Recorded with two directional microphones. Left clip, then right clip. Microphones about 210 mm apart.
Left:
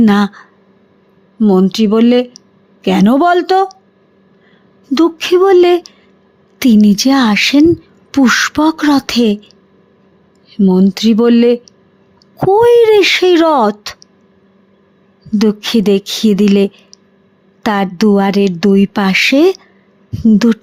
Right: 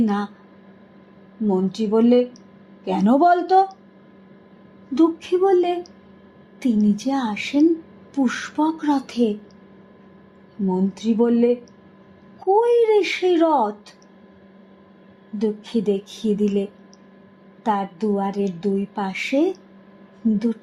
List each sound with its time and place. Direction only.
0.0 s speech: 35° left (ahead or behind)
1.5 s speech: 40° left (ahead or behind)
4.9 s a sound: 45° left (ahead or behind)
6.6 s speech: 40° left (ahead or behind)
10.7 s speech: 40° left (ahead or behind)
15.4 s speech: 40° left (ahead or behind)